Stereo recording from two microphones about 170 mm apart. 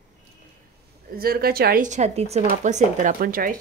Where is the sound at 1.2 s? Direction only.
60° right (ahead or behind).